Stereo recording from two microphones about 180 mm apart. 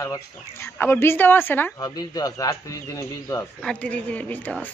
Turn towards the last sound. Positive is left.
turn(degrees=10)  # may be behind; listen again after turning